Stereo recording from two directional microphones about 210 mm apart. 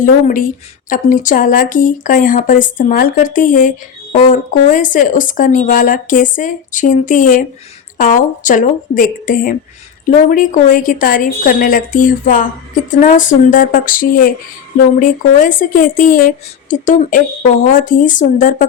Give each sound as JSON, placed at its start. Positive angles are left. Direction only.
{"t": 0.0, "sound": "speech", "side_deg": 40}